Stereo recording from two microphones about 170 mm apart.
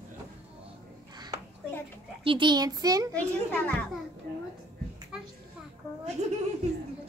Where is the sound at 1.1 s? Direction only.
25° right (ahead or behind).